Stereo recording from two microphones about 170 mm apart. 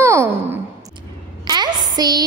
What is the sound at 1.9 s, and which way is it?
Speech, 25° right (ahead or behind).